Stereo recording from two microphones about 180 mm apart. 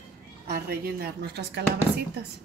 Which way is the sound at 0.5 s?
60° right (ahead or behind).